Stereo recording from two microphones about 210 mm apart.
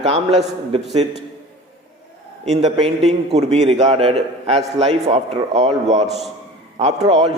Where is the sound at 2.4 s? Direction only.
30° right (ahead or behind).